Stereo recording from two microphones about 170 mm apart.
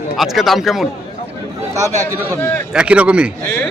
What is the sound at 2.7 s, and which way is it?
Speech, 5° right (ahead or behind).